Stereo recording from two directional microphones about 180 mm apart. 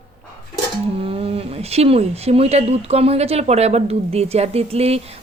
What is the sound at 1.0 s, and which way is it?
Speech, 30° right (ahead or behind).